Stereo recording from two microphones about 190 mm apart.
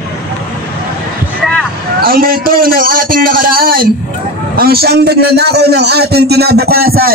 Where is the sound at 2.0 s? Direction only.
50° right (ahead or behind).